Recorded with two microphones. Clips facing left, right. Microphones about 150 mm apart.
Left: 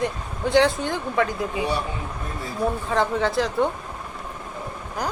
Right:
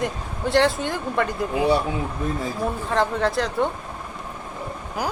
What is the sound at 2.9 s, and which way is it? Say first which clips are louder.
Speech: right 2 dB; centre (ahead or behind).